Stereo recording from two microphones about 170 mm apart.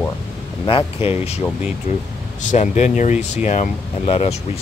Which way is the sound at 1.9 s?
45° left (ahead or behind).